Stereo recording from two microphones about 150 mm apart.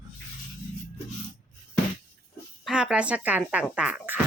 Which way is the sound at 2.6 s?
5° right (ahead or behind).